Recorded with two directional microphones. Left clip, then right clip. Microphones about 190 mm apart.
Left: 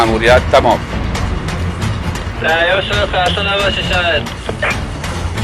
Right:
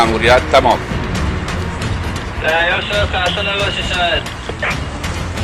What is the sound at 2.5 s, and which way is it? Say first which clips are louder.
Speech: left 2 dB; 60° left (ahead or behind).